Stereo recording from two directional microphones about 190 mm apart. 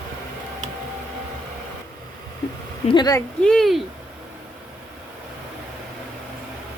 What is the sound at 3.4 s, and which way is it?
Speech, centre (ahead or behind).